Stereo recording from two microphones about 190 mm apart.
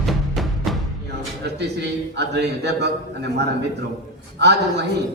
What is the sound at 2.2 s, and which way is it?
Speech, 60° right (ahead or behind).